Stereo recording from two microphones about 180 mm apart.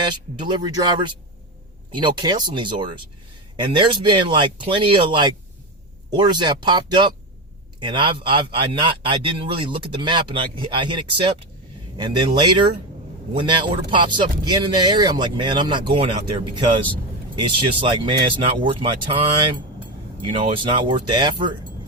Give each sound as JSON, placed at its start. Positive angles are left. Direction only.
{"t": 0.0, "sound": "speech", "side_deg": -25}
{"t": 20.3, "sound": "speech", "side_deg": -25}